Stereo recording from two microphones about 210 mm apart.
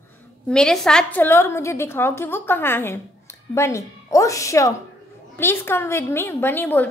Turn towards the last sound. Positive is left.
turn(degrees=10)  # may be behind; listen again after turning